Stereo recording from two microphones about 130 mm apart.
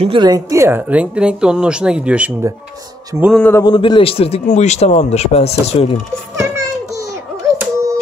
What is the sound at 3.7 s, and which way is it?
Speech, 40° left (ahead or behind).